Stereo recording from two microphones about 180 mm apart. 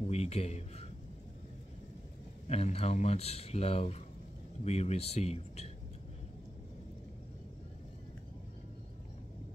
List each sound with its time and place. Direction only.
0.1 s speech: 35° left (ahead or behind)
2.4 s speech: 35° left (ahead or behind)